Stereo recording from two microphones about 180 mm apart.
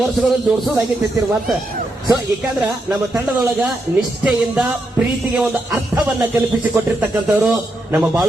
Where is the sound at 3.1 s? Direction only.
Centre (ahead or behind).